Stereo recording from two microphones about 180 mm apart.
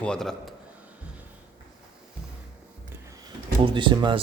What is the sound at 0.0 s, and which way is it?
Speech, 5° left (ahead or behind).